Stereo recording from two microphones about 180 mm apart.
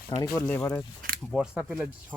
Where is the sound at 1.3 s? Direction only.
5° right (ahead or behind).